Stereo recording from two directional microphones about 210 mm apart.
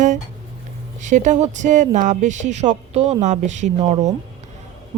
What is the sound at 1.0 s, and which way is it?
Speech, 35° right (ahead or behind).